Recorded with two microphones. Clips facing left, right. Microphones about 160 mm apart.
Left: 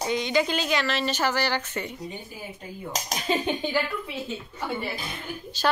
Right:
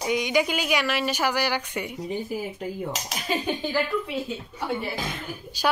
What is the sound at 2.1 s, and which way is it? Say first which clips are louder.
Speech: right 10 dB; 90° right.